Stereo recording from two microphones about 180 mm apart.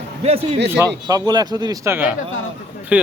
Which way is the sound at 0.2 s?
35° right (ahead or behind).